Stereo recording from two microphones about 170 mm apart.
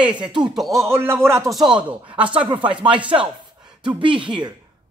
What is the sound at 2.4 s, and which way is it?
Speech, 30° right (ahead or behind).